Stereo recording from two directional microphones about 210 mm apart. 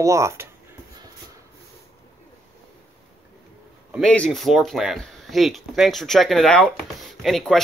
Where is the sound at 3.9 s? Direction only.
5° left (ahead or behind).